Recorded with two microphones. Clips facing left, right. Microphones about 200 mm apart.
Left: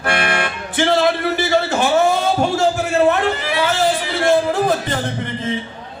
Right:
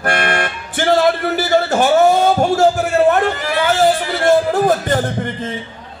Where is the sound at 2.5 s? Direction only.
45° right (ahead or behind).